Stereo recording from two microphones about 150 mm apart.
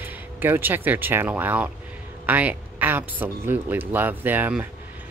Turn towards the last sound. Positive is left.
turn(degrees=-10)  # may be behind; listen again after turning